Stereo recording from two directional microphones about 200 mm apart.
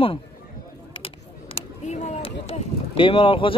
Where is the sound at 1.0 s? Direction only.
30° left (ahead or behind).